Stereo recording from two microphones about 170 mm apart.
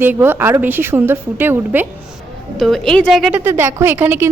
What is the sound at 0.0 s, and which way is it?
A woman's voice, 10° right (ahead or behind).